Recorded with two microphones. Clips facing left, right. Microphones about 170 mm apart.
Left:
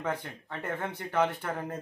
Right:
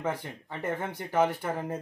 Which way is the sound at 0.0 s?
10° right (ahead or behind).